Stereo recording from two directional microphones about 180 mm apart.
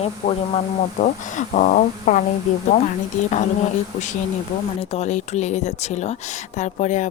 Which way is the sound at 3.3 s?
40° left (ahead or behind).